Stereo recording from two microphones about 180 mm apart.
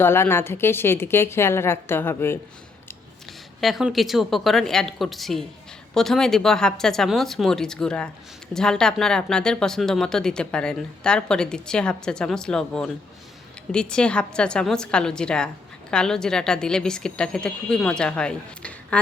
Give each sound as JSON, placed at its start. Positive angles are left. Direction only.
{"t": 0.0, "sound": "a woman's voice", "side_deg": 15}
{"t": 3.2, "sound": "speech", "side_deg": 0}